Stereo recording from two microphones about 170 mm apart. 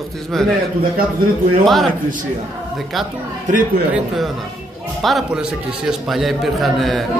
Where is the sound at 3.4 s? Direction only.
55° right (ahead or behind).